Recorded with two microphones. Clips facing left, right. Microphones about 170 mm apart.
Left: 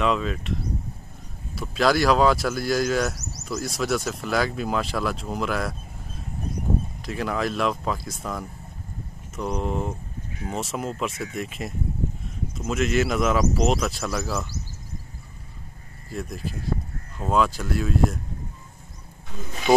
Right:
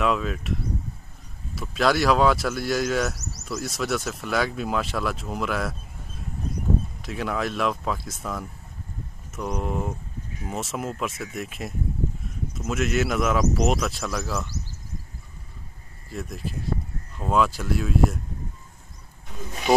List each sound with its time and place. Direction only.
0.0 s speech: centre (ahead or behind)
7.1 s speech: centre (ahead or behind)
16.1 s speech: centre (ahead or behind)